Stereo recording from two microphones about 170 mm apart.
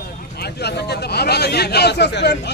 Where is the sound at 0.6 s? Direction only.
70° left (ahead or behind).